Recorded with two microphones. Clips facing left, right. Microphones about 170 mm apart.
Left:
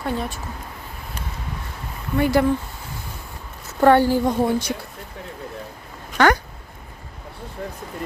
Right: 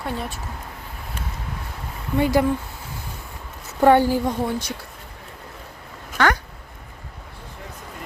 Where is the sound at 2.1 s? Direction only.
20° right (ahead or behind).